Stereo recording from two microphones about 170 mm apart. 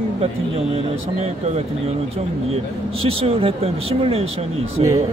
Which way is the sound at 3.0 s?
35° right (ahead or behind).